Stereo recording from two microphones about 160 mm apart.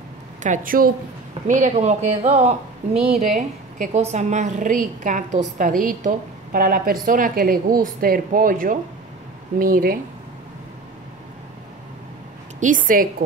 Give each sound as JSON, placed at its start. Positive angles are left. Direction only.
{"t": 0.4, "sound": "a woman's voice", "side_deg": -55}
{"t": 12.5, "sound": "a woman's voice", "side_deg": -55}